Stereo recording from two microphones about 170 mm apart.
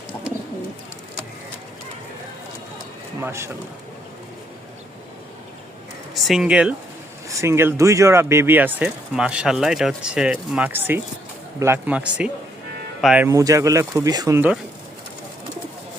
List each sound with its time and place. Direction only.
3.2 s speech: 15° right (ahead or behind)
6.1 s speech: centre (ahead or behind)
7.3 s speech: 15° right (ahead or behind)
13.2 s speech: 20° right (ahead or behind)